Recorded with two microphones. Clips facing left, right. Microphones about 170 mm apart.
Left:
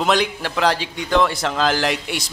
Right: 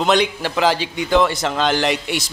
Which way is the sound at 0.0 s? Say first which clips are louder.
Right 2 dB; centre (ahead or behind).